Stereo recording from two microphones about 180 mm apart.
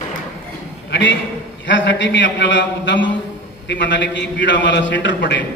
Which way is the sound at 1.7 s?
90° left.